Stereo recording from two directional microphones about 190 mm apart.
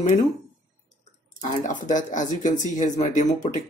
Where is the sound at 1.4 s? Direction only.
40° left (ahead or behind).